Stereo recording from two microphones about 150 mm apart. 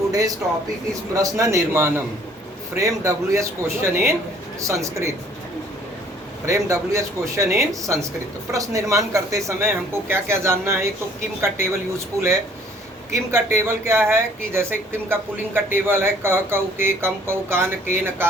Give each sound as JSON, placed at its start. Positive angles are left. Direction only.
{"t": 0.1, "sound": "speech", "side_deg": -25}
{"t": 6.4, "sound": "speech", "side_deg": -20}